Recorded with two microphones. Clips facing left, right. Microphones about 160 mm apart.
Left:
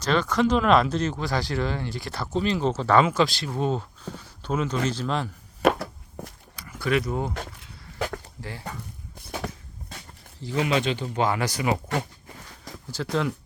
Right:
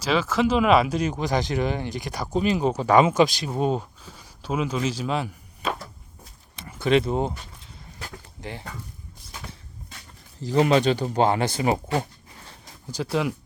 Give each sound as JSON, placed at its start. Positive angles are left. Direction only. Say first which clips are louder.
{"t": 0.0, "sound": "speech", "louder": "even", "side_deg": -5}
{"t": 5.6, "sound": "walk", "louder": "left 8 dB", "side_deg": 75}
{"t": 6.6, "sound": "speech", "louder": "right 4 dB", "side_deg": -25}
{"t": 8.4, "sound": "speech", "louder": "right 2 dB", "side_deg": -20}
{"t": 9.2, "sound": "a sound", "louder": "left 9 dB", "side_deg": 65}
{"t": 10.4, "sound": "speech", "louder": "right 5 dB", "side_deg": -40}
{"t": 12.9, "sound": "speech", "louder": "right 1 dB", "side_deg": -10}